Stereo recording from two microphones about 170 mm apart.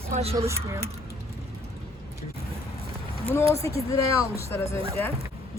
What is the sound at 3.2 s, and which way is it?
Speech, 15° left (ahead or behind).